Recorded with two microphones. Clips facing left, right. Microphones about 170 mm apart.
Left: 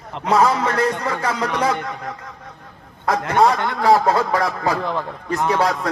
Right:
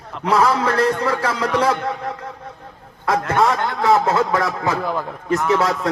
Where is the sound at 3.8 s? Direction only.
25° left (ahead or behind).